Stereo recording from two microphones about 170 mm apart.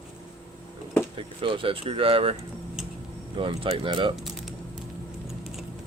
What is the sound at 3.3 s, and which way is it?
Speech, 30° right (ahead or behind).